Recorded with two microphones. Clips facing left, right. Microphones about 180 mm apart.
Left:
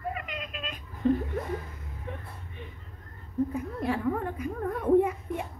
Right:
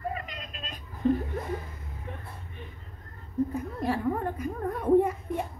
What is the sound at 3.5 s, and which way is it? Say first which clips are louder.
A child's voice: even; 40° right (ahead or behind).